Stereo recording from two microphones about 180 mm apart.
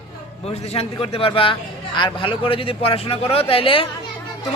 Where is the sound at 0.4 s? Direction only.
35° left (ahead or behind).